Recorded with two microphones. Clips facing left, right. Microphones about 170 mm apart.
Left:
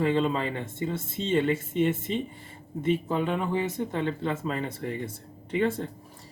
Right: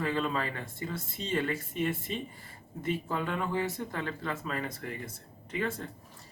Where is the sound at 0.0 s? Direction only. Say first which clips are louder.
Left 6 dB; 25° left (ahead or behind).